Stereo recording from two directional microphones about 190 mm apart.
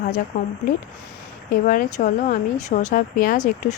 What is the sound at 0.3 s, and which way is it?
Speech, 45° left (ahead or behind).